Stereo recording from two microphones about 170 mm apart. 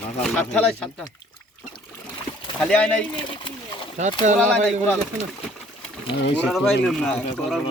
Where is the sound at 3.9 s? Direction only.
45° right (ahead or behind).